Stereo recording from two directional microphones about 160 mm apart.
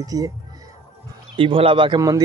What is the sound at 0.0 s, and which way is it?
Speech, 20° right (ahead or behind).